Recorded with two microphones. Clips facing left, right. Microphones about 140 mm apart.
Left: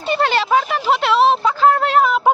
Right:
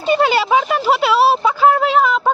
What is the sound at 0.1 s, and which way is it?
Speech, 10° right (ahead or behind).